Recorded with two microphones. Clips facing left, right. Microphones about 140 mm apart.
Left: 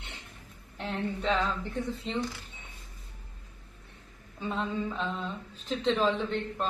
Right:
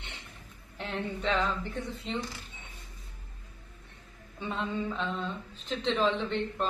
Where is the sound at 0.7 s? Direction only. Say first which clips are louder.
Left 2 dB; centre (ahead or behind).